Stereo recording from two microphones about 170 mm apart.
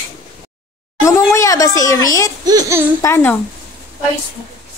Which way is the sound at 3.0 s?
15° left (ahead or behind).